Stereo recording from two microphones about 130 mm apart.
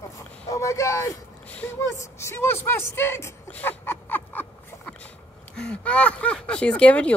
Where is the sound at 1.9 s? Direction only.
20° left (ahead or behind).